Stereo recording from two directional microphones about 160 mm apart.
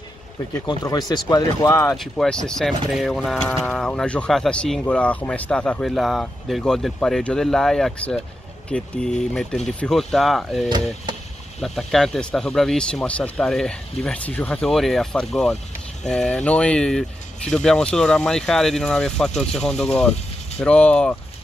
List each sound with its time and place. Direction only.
0.6 s speech: 25° left (ahead or behind)
2.0 s speech: 5° left (ahead or behind)